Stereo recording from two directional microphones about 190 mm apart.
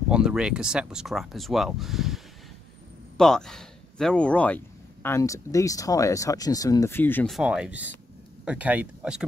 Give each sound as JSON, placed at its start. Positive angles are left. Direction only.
{"t": 0.1, "sound": "speech", "side_deg": -5}
{"t": 7.3, "sound": "speech", "side_deg": -5}